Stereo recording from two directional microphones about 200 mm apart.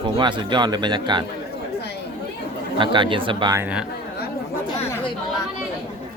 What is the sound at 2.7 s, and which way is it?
Speech, 25° right (ahead or behind).